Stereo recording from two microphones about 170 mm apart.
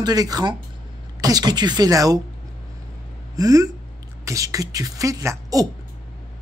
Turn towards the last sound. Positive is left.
turn(degrees=-20)  # may be behind; listen again after turning